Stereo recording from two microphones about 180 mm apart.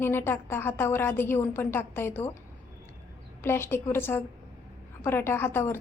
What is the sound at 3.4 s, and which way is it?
A woman's voice, 15° left (ahead or behind).